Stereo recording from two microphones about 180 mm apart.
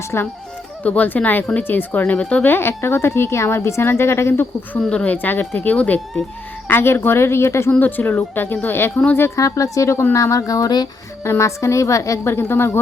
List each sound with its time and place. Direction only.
0.1 s speech: 10° left (ahead or behind)